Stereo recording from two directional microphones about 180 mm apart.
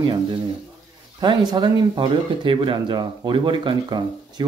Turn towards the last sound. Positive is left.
turn(degrees=-25)  # may be behind; listen again after turning